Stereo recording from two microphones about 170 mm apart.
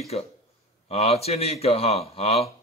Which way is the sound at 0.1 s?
40° left (ahead or behind).